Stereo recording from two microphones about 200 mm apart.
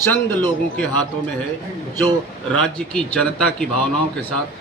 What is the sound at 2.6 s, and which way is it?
Speech, 5° left (ahead or behind).